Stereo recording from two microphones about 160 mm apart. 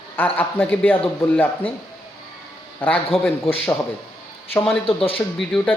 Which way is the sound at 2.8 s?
10° left (ahead or behind).